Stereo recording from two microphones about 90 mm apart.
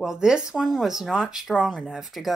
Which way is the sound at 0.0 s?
5° right (ahead or behind).